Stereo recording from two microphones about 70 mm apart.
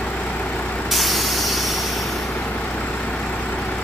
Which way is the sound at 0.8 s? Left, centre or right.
Centre.